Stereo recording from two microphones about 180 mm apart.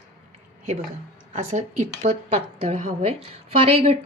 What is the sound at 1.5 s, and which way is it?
A woman's voice, 40° right (ahead or behind).